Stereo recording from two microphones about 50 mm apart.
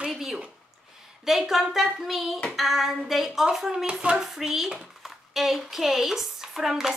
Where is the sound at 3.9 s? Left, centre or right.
Right.